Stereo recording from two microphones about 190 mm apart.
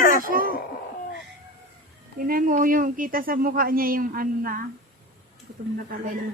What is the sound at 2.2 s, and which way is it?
Speech, 50° right (ahead or behind).